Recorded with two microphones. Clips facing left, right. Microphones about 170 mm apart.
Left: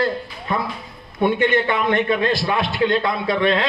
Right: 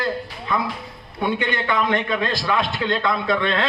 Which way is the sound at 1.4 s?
25° left (ahead or behind).